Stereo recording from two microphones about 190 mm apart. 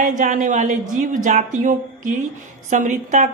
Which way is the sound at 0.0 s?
40° right (ahead or behind).